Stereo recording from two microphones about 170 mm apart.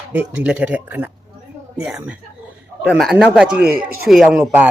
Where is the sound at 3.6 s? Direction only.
60° right (ahead or behind).